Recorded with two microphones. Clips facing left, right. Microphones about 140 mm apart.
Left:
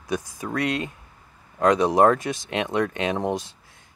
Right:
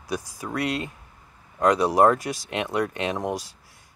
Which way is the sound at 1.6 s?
20° left (ahead or behind).